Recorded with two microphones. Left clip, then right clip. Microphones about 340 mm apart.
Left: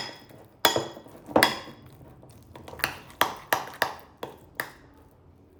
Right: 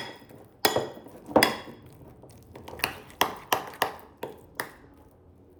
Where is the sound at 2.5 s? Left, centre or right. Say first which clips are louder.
Left 1 dB; centre.